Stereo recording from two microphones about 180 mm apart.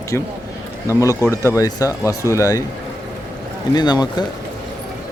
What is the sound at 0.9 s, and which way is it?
Speech, 20° left (ahead or behind).